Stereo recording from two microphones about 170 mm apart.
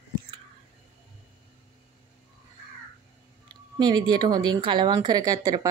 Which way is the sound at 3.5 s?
25° right (ahead or behind).